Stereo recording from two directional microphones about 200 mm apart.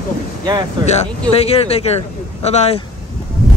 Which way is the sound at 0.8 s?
35° left (ahead or behind).